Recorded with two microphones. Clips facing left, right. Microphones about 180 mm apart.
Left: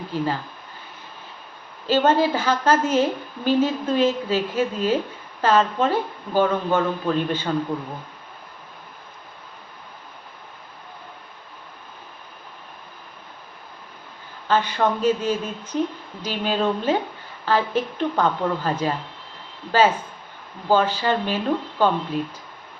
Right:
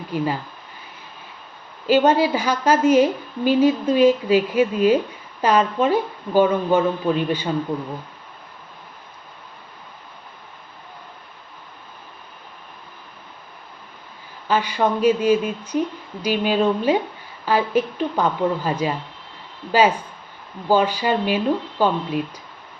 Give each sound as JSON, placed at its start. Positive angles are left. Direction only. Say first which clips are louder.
{"t": 0.1, "sound": "a woman's voice", "louder": "right 2 dB", "side_deg": -15}
{"t": 1.9, "sound": "a woman's voice", "louder": "right 2 dB", "side_deg": -10}
{"t": 14.4, "sound": "a woman's voice", "louder": "right 1 dB", "side_deg": -10}
{"t": 20.7, "sound": "a woman's voice", "louder": "right 1 dB", "side_deg": -10}